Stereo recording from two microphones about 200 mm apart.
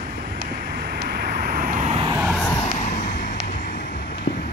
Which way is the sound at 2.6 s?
35° left (ahead or behind).